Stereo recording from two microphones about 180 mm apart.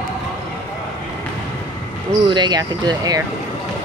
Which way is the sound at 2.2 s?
25° right (ahead or behind).